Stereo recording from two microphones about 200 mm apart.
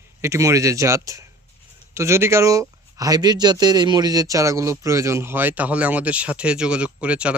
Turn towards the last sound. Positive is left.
turn(degrees=-5)  # may be behind; listen again after turning